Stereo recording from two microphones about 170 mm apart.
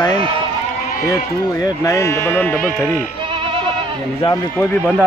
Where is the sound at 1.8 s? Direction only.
15° left (ahead or behind).